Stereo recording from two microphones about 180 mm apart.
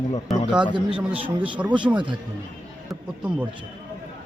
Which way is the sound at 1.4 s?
10° right (ahead or behind).